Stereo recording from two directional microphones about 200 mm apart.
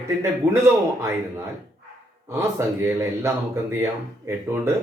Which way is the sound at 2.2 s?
15° right (ahead or behind).